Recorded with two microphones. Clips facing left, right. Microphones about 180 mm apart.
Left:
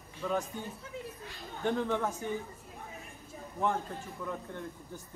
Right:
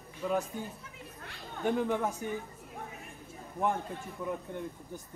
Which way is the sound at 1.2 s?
60° right (ahead or behind).